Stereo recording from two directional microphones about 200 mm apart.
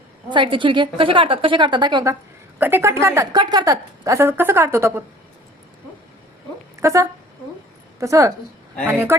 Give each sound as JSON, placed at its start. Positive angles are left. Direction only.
{"t": 0.3, "sound": "a woman's voice", "side_deg": -25}
{"t": 2.6, "sound": "a woman's voice", "side_deg": -10}
{"t": 6.7, "sound": "a woman's voice", "side_deg": -15}